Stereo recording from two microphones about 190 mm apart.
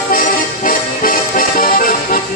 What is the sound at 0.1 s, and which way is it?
Accordion, 45° left (ahead or behind).